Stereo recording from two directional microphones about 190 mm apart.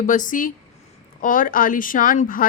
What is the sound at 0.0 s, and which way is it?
A woman's voice, 45° left (ahead or behind).